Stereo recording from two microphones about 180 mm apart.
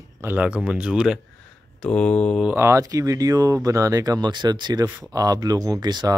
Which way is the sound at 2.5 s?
15° right (ahead or behind).